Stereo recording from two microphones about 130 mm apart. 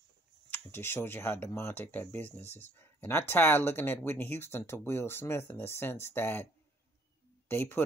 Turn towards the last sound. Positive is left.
turn(degrees=15)  # may be behind; listen again after turning